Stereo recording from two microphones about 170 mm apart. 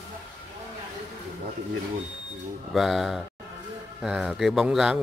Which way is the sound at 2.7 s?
Centre (ahead or behind).